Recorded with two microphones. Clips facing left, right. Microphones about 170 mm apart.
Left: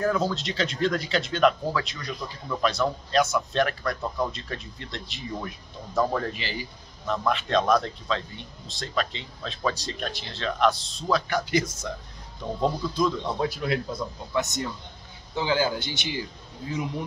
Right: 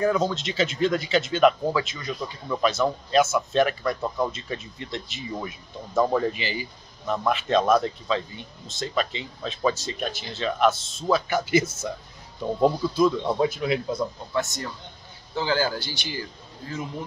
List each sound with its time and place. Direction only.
0.0 s speech: centre (ahead or behind)
14.3 s a man's voice: 20° left (ahead or behind)